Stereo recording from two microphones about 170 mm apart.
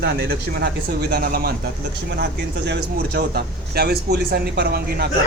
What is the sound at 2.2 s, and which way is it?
Speech, 80° right.